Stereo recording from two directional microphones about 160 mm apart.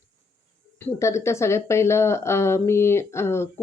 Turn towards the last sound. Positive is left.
turn(degrees=15)  # may be behind; listen again after turning